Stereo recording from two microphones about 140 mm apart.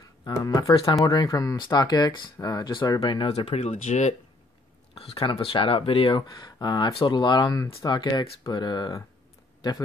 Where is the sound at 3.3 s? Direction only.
50° left (ahead or behind).